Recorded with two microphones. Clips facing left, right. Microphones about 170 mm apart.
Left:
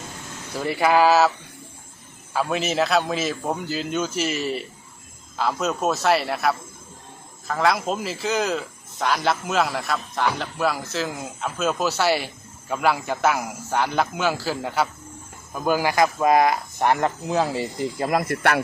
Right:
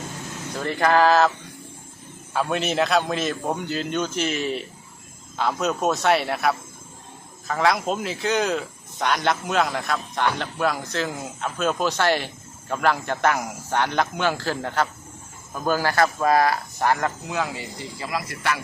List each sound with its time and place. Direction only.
0.5 s speech: 10° left (ahead or behind)
2.3 s a man's voice: centre (ahead or behind); by 17.7 s 35° left (ahead or behind)
17.9 s speech: 50° left (ahead or behind)